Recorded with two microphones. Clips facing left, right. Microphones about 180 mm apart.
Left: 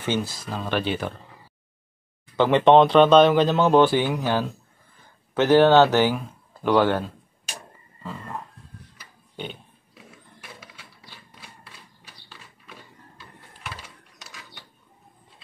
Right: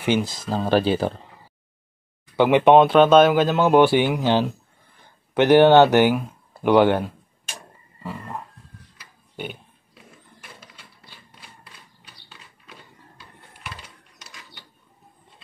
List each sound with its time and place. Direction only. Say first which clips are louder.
0.0 s speech: right 4 dB; 15° right (ahead or behind)
0.5 s speech: right 8 dB; 35° right (ahead or behind)
2.3 s speech: right 2 dB; 10° right (ahead or behind)
8.0 s wild animals: right 2 dB; 10° right (ahead or behind)